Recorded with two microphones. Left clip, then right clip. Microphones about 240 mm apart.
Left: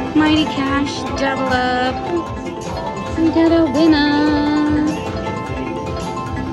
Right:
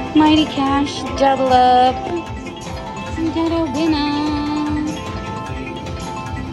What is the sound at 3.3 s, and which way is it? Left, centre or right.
Speech, centre.